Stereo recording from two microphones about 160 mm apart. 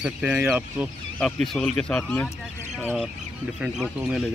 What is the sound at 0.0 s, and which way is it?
Speech, 5° right (ahead or behind).